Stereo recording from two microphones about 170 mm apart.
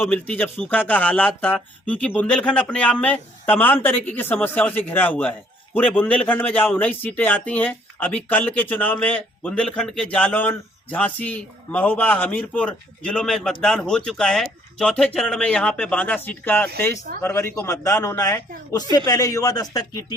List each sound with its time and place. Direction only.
0.0 s a man's voice: 5° left (ahead or behind)